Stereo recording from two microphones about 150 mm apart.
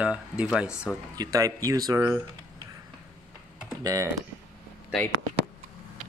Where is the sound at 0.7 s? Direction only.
20° left (ahead or behind).